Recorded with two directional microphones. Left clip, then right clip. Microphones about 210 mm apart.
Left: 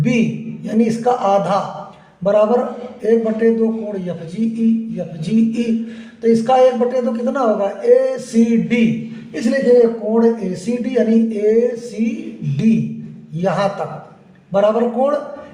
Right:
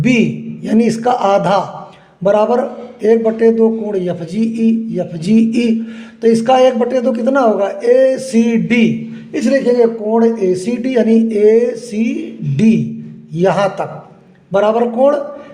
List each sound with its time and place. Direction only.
0.0 s a man's voice: 55° right (ahead or behind)
10.2 s speech: 55° right (ahead or behind)